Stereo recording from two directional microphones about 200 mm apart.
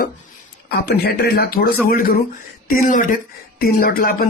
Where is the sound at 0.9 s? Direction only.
50° left (ahead or behind).